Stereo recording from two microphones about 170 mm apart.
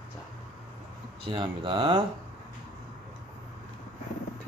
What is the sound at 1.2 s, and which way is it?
Speech, 30° right (ahead or behind).